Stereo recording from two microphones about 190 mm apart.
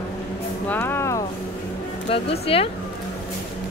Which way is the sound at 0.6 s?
10° left (ahead or behind).